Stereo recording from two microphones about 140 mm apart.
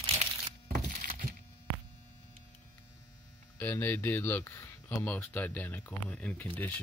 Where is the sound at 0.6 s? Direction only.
75° right (ahead or behind).